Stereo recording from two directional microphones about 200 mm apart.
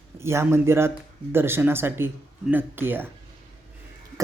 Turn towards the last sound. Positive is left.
turn(degrees=-10)  # may be behind; listen again after turning